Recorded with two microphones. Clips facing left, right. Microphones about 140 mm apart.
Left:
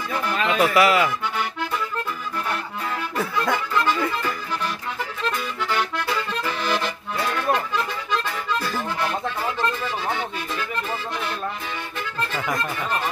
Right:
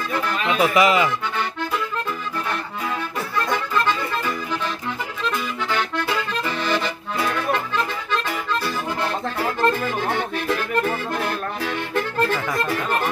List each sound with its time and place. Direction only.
0.4 s speech: centre (ahead or behind)
6.4 s accordion: centre (ahead or behind)
9.6 s accordion: 50° right (ahead or behind)